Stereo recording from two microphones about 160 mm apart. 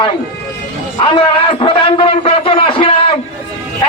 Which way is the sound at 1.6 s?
30° left (ahead or behind).